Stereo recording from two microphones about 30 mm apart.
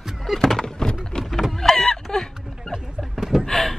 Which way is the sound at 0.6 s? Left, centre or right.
Left.